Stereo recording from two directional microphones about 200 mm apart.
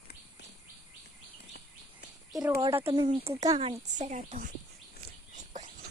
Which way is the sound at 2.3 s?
5° right (ahead or behind).